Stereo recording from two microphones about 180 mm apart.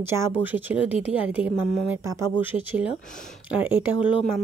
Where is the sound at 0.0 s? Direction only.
10° right (ahead or behind).